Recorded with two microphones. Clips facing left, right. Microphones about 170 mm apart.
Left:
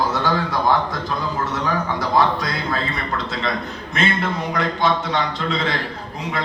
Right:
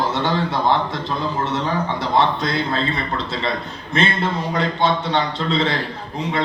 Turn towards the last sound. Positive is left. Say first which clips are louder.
# right 2 dB
turn(degrees=-30)  # may be behind; listen again after turning